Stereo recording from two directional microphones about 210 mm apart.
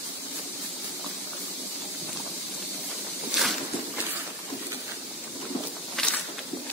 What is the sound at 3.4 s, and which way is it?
Walk, centre (ahead or behind).